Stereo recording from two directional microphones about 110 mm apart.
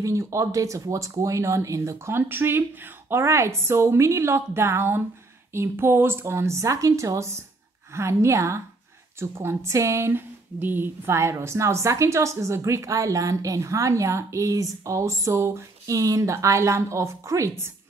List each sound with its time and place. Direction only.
0.0 s speech: 25° right (ahead or behind)